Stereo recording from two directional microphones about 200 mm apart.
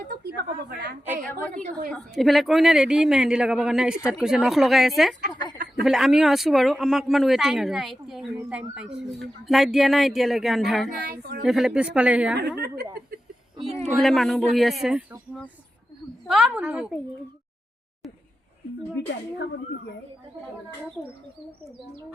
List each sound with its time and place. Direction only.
0.3 s a woman's voice: 50° right (ahead or behind)
1.2 s a woman's voice: 5° left (ahead or behind)
5.3 s speech: 20° left (ahead or behind)
5.8 s speech: centre (ahead or behind)
11.1 s a woman's voice: 50° right (ahead or behind)
11.4 s speech: 5° right (ahead or behind)
12.4 s a woman's voice: 55° right (ahead or behind)
13.8 s speech: centre (ahead or behind)
16.2 s speech: 5° right (ahead or behind)